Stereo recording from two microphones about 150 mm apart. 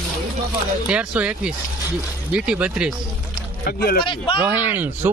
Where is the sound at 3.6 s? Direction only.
90° left.